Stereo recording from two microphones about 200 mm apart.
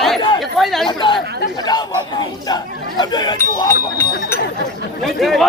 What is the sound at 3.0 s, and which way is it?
Speech, 20° left (ahead or behind).